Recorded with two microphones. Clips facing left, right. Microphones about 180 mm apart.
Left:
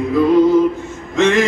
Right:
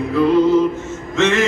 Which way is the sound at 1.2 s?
15° left (ahead or behind).